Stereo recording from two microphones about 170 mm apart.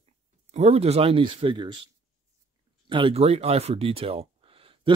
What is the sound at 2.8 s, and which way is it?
Speech, 30° right (ahead or behind).